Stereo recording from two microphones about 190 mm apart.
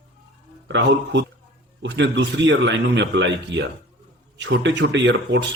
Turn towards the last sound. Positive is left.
turn(degrees=-70)  # may be behind; listen again after turning